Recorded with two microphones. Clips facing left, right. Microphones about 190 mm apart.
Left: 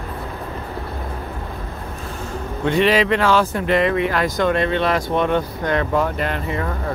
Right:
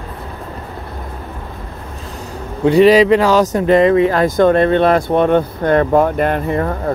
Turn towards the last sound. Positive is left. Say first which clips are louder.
# right 7 dB
turn(degrees=-50)  # may be behind; listen again after turning